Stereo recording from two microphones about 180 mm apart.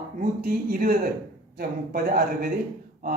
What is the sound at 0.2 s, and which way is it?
Speech, 55° right (ahead or behind).